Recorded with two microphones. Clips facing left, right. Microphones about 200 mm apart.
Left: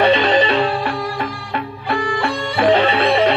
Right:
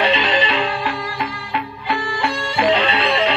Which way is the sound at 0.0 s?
55° left (ahead or behind).